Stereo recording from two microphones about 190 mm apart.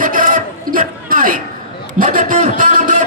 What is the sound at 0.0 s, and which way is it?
Music, 45° right (ahead or behind).